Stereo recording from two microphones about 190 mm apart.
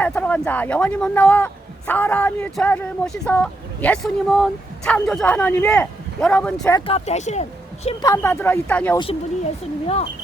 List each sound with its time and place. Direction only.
0.0 s speech: 10° left (ahead or behind)
6.7 s speech: 30° left (ahead or behind)
8.0 s speech: 15° left (ahead or behind)
9.8 s speech: 30° left (ahead or behind)